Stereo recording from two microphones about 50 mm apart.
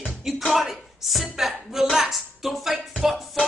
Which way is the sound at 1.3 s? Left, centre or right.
Centre.